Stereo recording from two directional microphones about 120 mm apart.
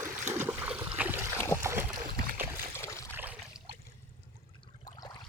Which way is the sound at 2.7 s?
20° left (ahead or behind).